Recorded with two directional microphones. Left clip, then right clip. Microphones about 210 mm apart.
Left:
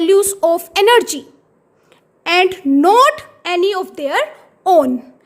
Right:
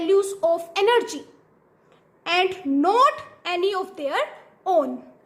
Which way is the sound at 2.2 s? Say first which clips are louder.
Left 8 dB; 40° left (ahead or behind).